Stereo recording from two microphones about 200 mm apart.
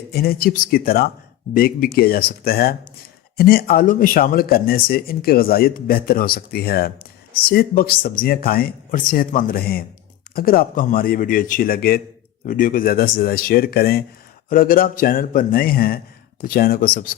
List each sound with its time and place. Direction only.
0.1 s speech: 50° left (ahead or behind)